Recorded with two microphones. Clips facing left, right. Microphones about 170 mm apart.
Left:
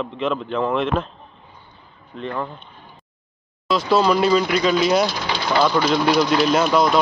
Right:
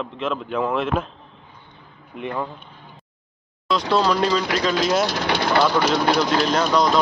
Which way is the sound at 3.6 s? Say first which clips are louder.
Left 2 dB; 5° left (ahead or behind).